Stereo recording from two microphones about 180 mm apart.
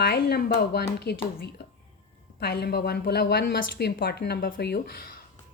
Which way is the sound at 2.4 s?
60° left (ahead or behind).